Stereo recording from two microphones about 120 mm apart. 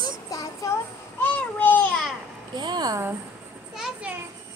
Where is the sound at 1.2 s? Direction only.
15° left (ahead or behind).